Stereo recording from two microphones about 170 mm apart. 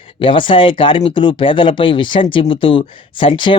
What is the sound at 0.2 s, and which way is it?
Speech, 30° left (ahead or behind).